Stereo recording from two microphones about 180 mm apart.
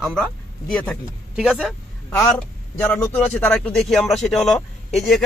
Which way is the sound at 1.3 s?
5° right (ahead or behind).